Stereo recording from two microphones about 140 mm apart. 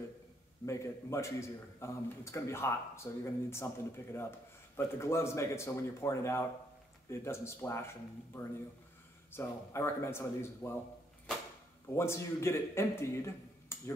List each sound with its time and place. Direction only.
0.7 s a man's voice: 20° left (ahead or behind)
11.9 s speech: 20° left (ahead or behind)